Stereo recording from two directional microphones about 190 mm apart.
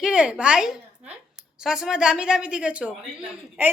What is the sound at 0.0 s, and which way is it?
A woman's voice, 5° right (ahead or behind).